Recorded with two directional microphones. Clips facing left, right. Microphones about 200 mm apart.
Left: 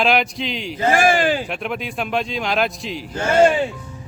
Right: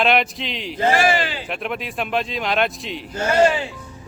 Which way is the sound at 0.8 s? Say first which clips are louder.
Left 2 dB; 50° left (ahead or behind).